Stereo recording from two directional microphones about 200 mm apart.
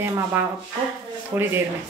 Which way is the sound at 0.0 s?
10° right (ahead or behind).